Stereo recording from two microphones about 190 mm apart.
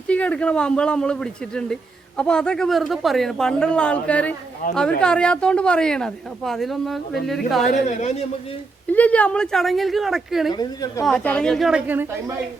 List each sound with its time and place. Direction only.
0.1 s speech: 5° left (ahead or behind)
7.7 s speech: 40° left (ahead or behind)
8.9 s speech: 10° left (ahead or behind)
10.5 s a woman's voice: 20° left (ahead or behind)
11.0 s speech: 5° left (ahead or behind)